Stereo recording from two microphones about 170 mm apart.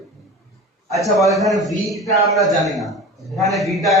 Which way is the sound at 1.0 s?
Centre (ahead or behind).